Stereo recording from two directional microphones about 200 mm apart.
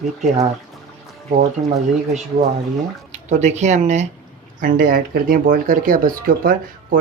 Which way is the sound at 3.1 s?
35° right (ahead or behind).